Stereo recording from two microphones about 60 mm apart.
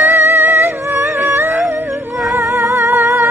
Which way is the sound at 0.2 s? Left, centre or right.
Right.